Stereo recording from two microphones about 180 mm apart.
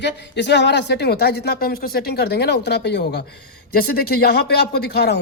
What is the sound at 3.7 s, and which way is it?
Speech, 60° left (ahead or behind).